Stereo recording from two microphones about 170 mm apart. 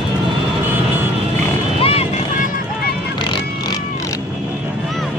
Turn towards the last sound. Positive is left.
turn(degrees=25)  # may be behind; listen again after turning